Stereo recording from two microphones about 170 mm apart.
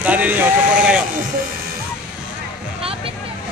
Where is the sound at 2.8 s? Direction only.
35° right (ahead or behind).